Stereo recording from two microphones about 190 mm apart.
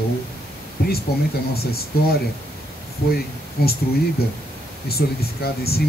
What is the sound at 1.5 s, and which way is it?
Speech, 55° left (ahead or behind).